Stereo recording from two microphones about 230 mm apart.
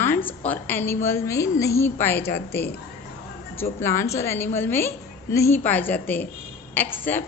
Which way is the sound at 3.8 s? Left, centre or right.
Centre.